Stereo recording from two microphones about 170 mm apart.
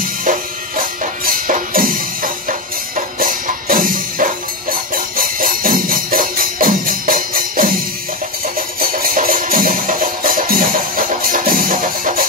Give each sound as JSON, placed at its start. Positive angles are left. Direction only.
{"t": 0.2, "sound": "music", "side_deg": -55}